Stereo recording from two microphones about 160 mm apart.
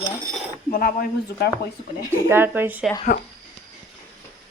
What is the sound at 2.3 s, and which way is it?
Speech, 15° right (ahead or behind).